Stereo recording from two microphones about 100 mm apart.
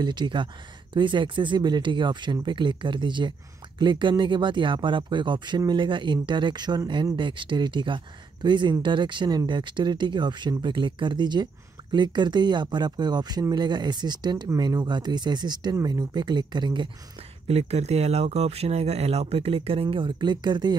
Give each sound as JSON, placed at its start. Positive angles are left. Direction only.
{"t": 0.0, "sound": "speech", "side_deg": -50}
{"t": 17.5, "sound": "speech", "side_deg": -90}